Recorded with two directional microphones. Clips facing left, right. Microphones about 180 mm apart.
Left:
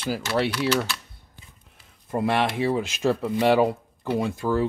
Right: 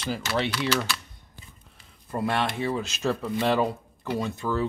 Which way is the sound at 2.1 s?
15° left (ahead or behind).